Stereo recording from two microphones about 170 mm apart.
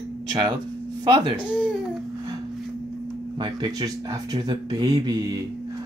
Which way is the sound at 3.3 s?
25° right (ahead or behind).